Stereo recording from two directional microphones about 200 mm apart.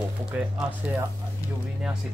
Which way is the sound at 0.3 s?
5° right (ahead or behind).